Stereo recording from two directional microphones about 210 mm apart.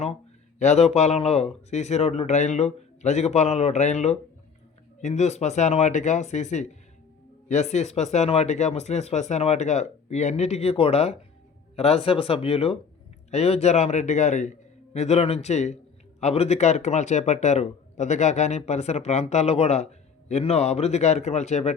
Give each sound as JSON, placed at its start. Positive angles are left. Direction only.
{"t": 0.6, "sound": "speech", "side_deg": 30}